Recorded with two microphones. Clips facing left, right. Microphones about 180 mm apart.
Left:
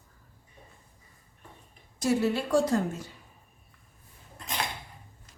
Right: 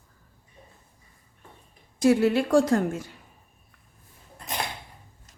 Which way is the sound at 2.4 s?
50° right (ahead or behind).